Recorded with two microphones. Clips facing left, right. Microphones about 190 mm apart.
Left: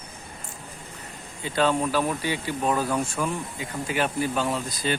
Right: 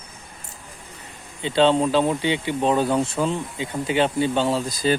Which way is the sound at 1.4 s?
25° right (ahead or behind).